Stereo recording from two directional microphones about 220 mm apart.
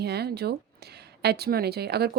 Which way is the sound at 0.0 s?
45° right (ahead or behind).